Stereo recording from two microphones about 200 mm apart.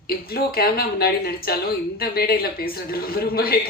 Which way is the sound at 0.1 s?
50° left (ahead or behind).